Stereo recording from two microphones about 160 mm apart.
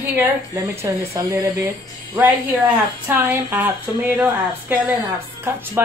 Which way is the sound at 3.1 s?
10° right (ahead or behind).